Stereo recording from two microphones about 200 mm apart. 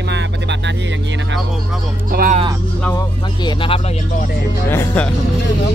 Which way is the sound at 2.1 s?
45° right (ahead or behind).